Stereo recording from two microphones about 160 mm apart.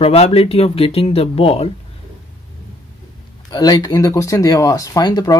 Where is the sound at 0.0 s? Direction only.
40° left (ahead or behind).